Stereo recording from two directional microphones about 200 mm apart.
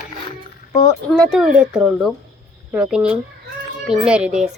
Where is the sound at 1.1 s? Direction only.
Centre (ahead or behind).